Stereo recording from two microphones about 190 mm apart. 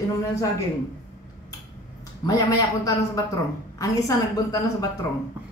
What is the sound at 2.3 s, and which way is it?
A man's voice, 20° left (ahead or behind).